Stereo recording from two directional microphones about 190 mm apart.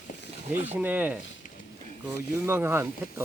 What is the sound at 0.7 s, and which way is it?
Speech, 10° right (ahead or behind).